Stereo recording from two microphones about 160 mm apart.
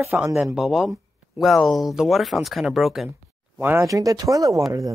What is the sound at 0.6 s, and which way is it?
Speech, centre (ahead or behind).